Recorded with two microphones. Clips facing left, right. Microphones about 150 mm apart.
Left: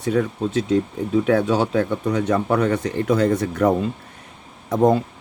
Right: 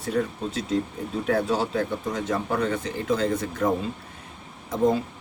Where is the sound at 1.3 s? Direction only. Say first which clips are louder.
Left 3 dB; 85° left.